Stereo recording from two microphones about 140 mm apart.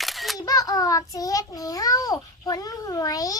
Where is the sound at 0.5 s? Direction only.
25° left (ahead or behind).